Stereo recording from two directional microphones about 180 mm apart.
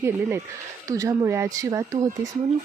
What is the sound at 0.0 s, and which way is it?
Speech, 15° right (ahead or behind).